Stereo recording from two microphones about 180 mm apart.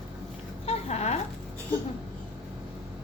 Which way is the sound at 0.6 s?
35° left (ahead or behind).